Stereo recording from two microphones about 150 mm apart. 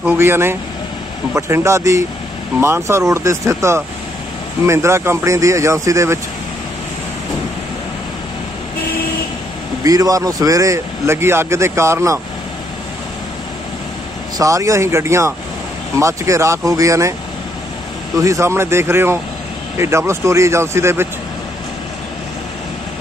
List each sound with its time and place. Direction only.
0.0 s speech: 15° right (ahead or behind)
9.8 s speech: 25° right (ahead or behind)
14.4 s speech: 20° right (ahead or behind)
18.2 s speech: 20° right (ahead or behind)